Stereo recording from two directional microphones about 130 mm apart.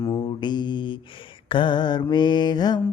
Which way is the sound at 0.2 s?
35° left (ahead or behind).